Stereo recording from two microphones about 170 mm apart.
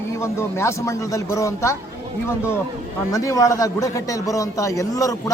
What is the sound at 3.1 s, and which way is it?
A man's voice, 20° left (ahead or behind).